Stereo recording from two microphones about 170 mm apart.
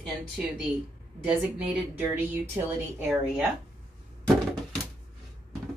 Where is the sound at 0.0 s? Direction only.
5° right (ahead or behind).